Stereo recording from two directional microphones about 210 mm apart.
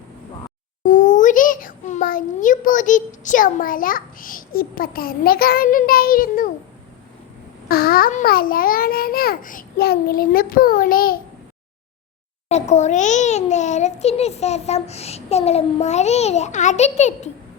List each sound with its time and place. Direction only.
0.9 s a child's voice: 35° left (ahead or behind)
7.7 s a child's voice: 45° left (ahead or behind)
12.5 s a child's voice: 30° left (ahead or behind)